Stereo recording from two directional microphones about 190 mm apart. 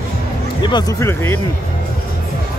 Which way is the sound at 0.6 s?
25° left (ahead or behind).